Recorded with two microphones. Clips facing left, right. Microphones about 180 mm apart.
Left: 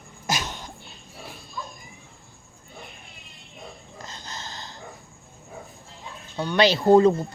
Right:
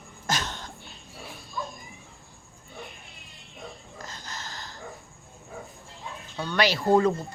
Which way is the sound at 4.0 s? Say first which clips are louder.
Left 2 dB; 20° left (ahead or behind).